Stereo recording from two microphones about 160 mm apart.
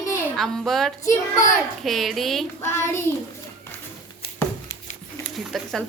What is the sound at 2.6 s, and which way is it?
Speech, 15° left (ahead or behind).